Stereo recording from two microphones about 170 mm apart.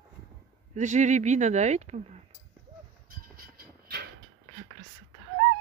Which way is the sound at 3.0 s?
60° right (ahead or behind).